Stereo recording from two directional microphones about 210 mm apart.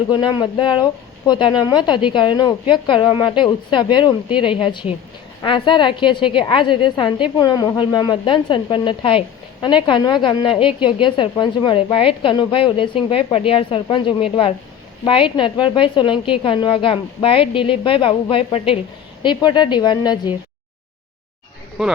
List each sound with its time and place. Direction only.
0.1 s a woman's voice: 20° left (ahead or behind)
21.8 s speech: 5° right (ahead or behind)